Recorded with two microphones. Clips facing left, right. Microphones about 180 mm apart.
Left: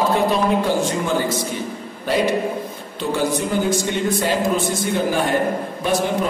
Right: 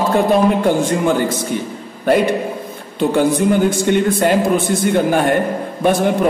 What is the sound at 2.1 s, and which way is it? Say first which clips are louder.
A man's voice: right 4 dB; 55° right (ahead or behind).